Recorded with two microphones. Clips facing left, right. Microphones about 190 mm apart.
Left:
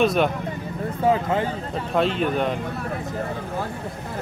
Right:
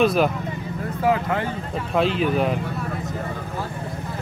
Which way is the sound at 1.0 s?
25° left (ahead or behind).